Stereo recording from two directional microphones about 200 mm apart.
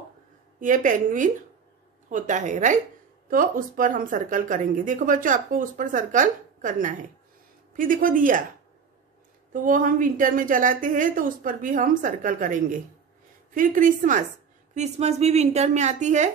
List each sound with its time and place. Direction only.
0.6 s a woman's voice: 40° right (ahead or behind)
9.5 s speech: 40° right (ahead or behind)